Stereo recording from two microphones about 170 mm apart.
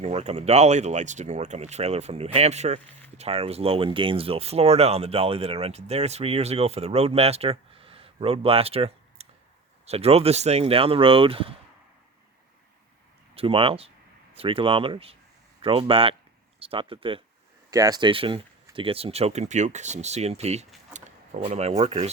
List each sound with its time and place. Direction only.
0.0 s speech: 40° right (ahead or behind)
13.3 s speech: 35° right (ahead or behind)
17.7 s speech: 20° right (ahead or behind); by 22.1 s 40° right (ahead or behind)